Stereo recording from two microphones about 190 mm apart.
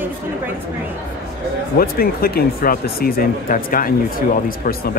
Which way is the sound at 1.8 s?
50° left (ahead or behind).